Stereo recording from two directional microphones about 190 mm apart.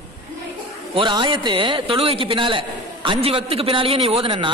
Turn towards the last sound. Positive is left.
turn(degrees=-25)  # may be behind; listen again after turning